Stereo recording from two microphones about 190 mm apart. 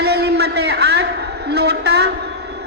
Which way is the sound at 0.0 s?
60° right (ahead or behind).